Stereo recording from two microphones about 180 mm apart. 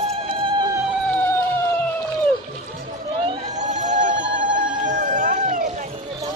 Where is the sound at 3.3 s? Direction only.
40° right (ahead or behind).